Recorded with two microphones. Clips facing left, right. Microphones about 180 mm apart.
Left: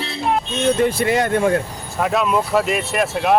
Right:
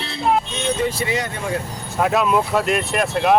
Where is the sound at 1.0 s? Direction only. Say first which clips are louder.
Left 7 dB; 55° left (ahead or behind).